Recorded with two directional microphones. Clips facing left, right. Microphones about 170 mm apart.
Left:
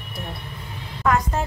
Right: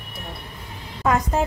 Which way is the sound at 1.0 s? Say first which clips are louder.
Right 1 dB; 20° right (ahead or behind).